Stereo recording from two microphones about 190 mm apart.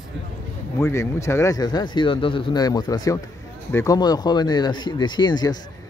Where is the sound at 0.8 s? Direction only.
15° left (ahead or behind).